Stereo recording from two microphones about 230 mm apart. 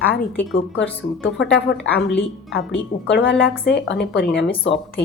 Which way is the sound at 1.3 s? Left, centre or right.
Left.